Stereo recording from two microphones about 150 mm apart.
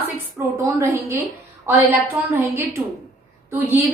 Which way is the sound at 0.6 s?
20° right (ahead or behind).